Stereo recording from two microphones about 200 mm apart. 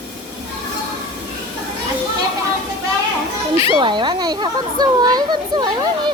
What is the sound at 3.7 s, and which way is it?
Speech, 25° right (ahead or behind).